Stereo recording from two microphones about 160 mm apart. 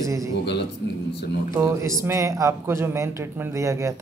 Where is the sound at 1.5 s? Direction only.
20° right (ahead or behind).